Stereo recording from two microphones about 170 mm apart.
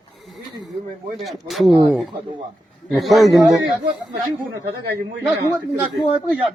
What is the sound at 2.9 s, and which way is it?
Speech, centre (ahead or behind).